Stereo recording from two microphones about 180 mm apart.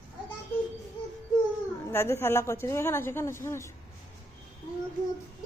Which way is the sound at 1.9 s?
15° left (ahead or behind).